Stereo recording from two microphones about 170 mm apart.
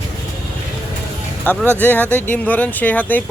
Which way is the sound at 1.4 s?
5° left (ahead or behind).